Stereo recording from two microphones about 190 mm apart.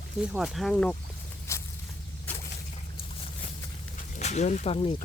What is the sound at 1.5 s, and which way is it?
Snake, 15° left (ahead or behind).